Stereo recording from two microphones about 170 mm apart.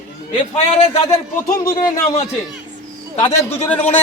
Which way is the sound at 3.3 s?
15° left (ahead or behind).